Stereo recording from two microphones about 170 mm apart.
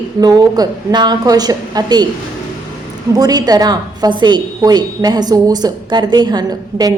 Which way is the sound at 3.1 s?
20° right (ahead or behind).